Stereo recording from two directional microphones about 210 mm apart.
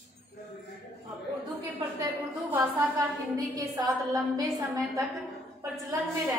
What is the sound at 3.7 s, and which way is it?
Speech, 15° right (ahead or behind).